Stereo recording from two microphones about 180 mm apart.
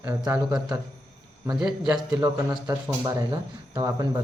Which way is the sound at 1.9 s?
10° right (ahead or behind).